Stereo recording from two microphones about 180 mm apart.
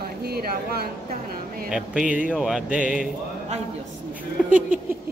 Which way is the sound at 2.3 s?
Centre (ahead or behind).